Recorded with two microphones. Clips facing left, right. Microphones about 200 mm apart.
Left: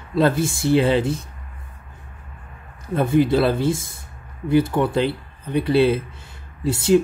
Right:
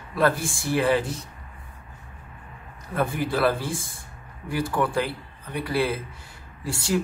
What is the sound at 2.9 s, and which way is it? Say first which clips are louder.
Speech: left 8 dB; 20° left (ahead or behind).